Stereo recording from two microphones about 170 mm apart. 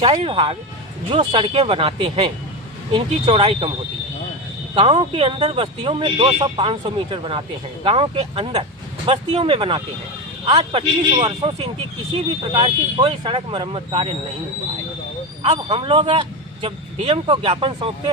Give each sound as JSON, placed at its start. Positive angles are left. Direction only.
{"t": 0.0, "sound": "speech", "side_deg": -35}
{"t": 4.7, "sound": "speech", "side_deg": -30}
{"t": 15.5, "sound": "speech", "side_deg": -30}